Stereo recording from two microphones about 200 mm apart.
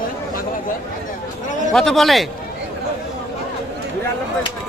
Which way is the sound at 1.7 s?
Centre (ahead or behind).